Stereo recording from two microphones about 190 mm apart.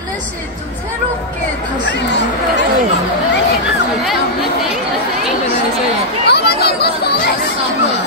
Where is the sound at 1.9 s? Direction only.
65° left (ahead or behind).